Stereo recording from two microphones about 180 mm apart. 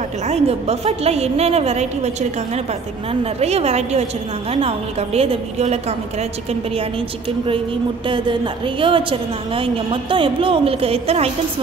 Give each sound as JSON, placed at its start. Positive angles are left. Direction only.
{"t": 0.3, "sound": "a woman's voice", "side_deg": -35}
{"t": 3.1, "sound": "a woman's voice", "side_deg": -35}
{"t": 7.2, "sound": "a woman's voice", "side_deg": -30}